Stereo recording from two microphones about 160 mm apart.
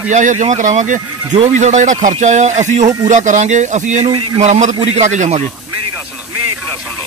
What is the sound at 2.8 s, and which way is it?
Speech, 25° right (ahead or behind).